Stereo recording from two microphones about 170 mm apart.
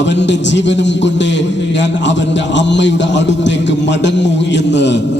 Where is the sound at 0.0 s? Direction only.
90° left.